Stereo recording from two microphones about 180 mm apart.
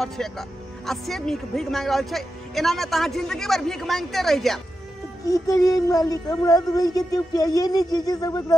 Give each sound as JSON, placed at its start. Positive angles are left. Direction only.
{"t": 0.0, "sound": "speech", "side_deg": 0}
{"t": 5.2, "sound": "speech", "side_deg": 20}